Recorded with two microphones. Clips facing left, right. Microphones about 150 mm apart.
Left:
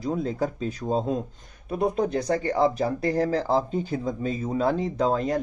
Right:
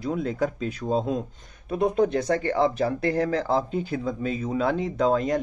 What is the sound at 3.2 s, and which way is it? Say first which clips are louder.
Speech: left 1 dB; 35° left (ahead or behind).